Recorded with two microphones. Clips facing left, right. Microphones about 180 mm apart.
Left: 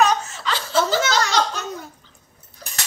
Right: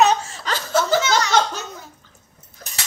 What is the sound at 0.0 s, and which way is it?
Laughter, 35° right (ahead or behind).